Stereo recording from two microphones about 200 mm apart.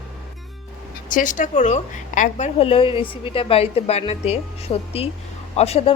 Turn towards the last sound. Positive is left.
turn(degrees=30)  # may be behind; listen again after turning